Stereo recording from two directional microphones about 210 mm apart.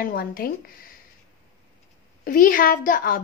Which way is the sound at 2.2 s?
40° left (ahead or behind).